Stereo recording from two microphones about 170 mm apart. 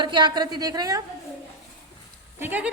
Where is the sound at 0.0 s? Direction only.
25° right (ahead or behind).